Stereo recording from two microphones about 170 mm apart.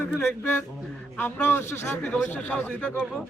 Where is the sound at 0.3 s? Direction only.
15° left (ahead or behind).